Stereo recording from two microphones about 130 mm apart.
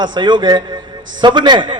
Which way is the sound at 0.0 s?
35° right (ahead or behind).